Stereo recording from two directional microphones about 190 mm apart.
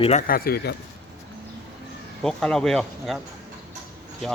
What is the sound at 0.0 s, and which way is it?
Speech, 35° left (ahead or behind).